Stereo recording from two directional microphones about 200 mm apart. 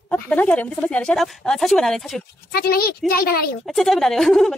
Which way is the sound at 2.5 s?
50° left (ahead or behind).